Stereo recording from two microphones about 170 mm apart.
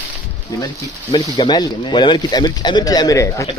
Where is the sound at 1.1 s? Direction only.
25° left (ahead or behind).